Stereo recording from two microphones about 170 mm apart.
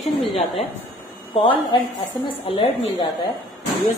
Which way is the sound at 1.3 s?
30° left (ahead or behind).